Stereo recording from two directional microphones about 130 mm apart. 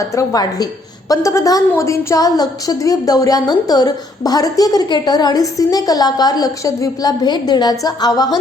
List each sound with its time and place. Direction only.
0.0 s a woman's voice: 25° left (ahead or behind)